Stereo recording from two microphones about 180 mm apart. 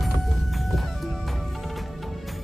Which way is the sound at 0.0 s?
Centre (ahead or behind).